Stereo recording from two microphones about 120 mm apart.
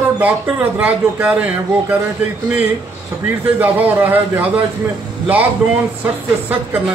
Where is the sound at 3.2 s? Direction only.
15° right (ahead or behind).